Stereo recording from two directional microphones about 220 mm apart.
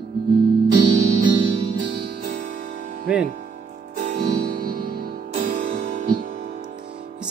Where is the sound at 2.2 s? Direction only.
40° right (ahead or behind).